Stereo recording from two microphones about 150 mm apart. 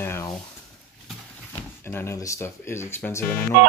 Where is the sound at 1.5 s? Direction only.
15° left (ahead or behind).